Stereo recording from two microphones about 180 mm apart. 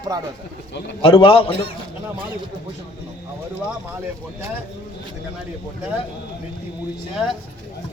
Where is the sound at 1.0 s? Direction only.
30° left (ahead or behind).